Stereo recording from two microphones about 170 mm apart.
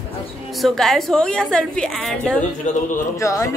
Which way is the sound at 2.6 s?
45° left (ahead or behind).